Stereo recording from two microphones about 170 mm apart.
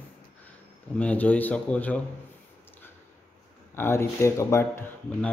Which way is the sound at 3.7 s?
15° left (ahead or behind).